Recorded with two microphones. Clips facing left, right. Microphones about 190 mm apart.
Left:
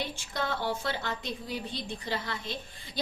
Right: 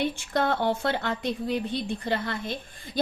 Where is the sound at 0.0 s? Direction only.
60° right (ahead or behind).